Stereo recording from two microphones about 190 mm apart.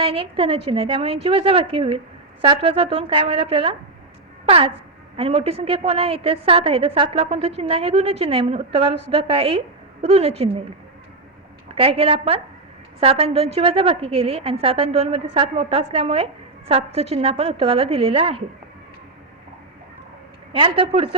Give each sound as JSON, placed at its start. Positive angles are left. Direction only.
{"t": 0.0, "sound": "a woman's voice", "side_deg": -30}
{"t": 11.7, "sound": "a woman's voice", "side_deg": -30}
{"t": 20.5, "sound": "a woman's voice", "side_deg": -25}